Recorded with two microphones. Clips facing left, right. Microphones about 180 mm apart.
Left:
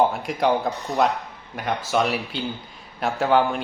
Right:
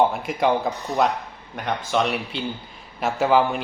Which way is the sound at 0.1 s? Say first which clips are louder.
Even; centre (ahead or behind).